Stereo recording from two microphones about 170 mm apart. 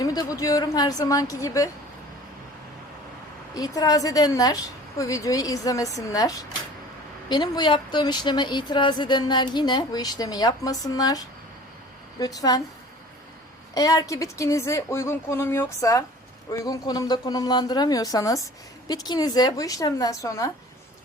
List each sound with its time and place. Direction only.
0.0 s speech: 20° left (ahead or behind)
3.5 s speech: 20° left (ahead or behind)
13.7 s speech: 20° left (ahead or behind)